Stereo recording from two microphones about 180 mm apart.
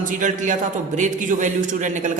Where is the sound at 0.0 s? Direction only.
45° right (ahead or behind).